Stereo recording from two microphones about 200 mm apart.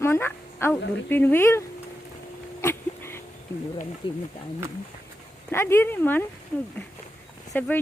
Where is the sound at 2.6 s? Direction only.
10° left (ahead or behind).